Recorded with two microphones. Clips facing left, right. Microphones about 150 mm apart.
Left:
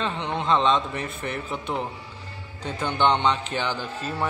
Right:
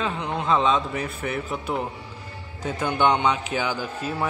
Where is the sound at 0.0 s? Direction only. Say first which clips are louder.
Right 1 dB; 5° right (ahead or behind).